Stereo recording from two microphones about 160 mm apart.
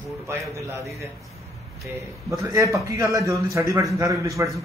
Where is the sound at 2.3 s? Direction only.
20° right (ahead or behind).